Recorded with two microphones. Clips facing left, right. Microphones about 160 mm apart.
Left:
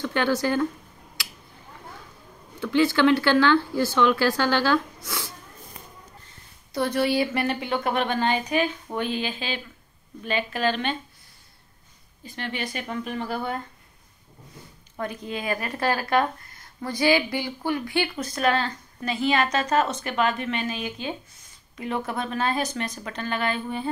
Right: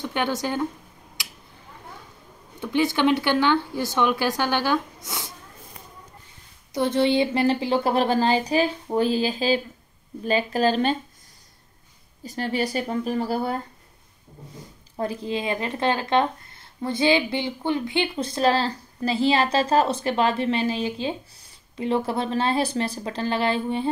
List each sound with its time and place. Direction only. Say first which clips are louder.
0.0 s speech: left 2 dB; 20° right (ahead or behind)
1.2 s a sound: left 1 dB; 20° right (ahead or behind)
2.6 s a woman's voice: left 1 dB; 20° right (ahead or behind)
6.7 s a woman's voice: right 3 dB; 20° right (ahead or behind); by 11.0 s 40° right (ahead or behind)
12.3 s a woman's voice: right 6 dB; 40° right (ahead or behind)
15.0 s a woman's voice: right 4 dB; 30° right (ahead or behind)